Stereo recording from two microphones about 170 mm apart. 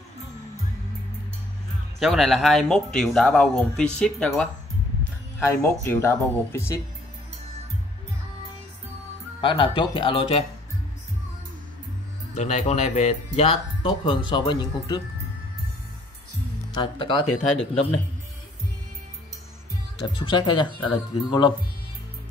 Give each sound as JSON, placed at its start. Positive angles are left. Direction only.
{"t": 2.0, "sound": "speech", "side_deg": 0}
{"t": 5.6, "sound": "speech", "side_deg": 15}
{"t": 9.4, "sound": "speech", "side_deg": 30}
{"t": 12.4, "sound": "speech", "side_deg": 45}
{"t": 16.7, "sound": "speech", "side_deg": 30}
{"t": 20.1, "sound": "speech", "side_deg": 25}